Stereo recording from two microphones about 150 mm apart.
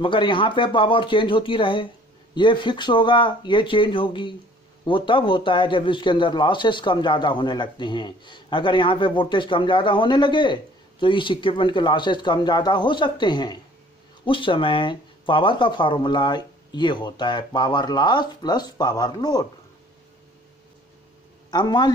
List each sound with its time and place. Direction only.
0.0 s a man's voice: 35° left (ahead or behind)
21.5 s a man's voice: 30° left (ahead or behind)